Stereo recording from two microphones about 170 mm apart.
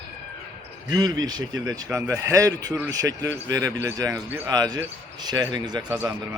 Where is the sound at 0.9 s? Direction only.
25° right (ahead or behind).